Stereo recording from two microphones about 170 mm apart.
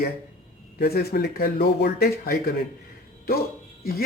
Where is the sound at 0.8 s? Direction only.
65° left (ahead or behind).